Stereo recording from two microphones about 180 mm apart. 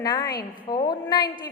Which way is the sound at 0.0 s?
20° left (ahead or behind).